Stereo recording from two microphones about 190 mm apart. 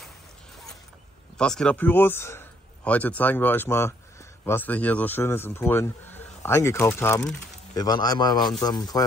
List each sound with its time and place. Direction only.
1.4 s speech: 5° left (ahead or behind); by 9.0 s 20° left (ahead or behind)